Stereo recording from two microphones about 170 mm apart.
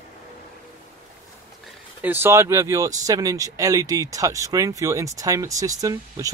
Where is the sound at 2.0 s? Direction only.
10° right (ahead or behind).